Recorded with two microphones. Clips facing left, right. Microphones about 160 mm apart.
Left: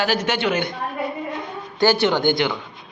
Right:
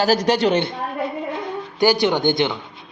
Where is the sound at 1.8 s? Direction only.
15° right (ahead or behind).